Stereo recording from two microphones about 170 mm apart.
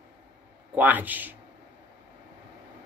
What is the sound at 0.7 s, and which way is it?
Speech, 10° right (ahead or behind).